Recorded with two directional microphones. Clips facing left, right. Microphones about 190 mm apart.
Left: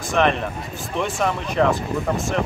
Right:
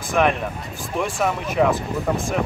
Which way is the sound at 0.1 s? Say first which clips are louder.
Even; 5° right (ahead or behind).